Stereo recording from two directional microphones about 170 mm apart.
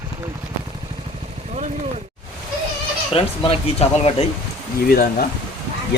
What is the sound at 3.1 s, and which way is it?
Speech, 35° left (ahead or behind).